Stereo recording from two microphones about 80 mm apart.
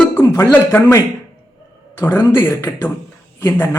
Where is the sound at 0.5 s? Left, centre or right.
Left.